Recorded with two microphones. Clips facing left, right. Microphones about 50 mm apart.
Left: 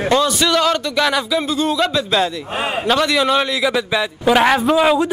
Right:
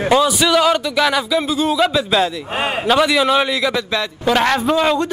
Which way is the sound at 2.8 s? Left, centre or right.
Centre.